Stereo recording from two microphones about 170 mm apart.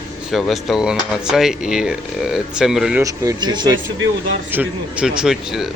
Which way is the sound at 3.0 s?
20° right (ahead or behind).